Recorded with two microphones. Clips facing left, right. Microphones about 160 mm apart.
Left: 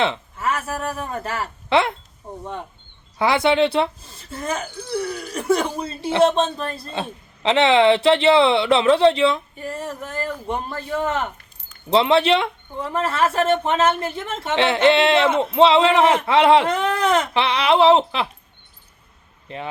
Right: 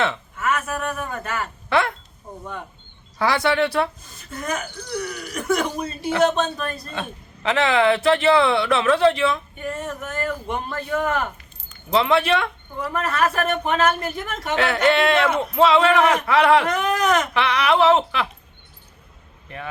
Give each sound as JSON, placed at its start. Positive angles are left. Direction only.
{"t": 0.0, "sound": "a man's voice", "side_deg": 25}